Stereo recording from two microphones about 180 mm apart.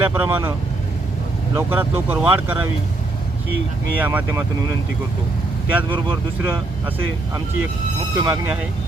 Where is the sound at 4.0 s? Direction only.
10° right (ahead or behind).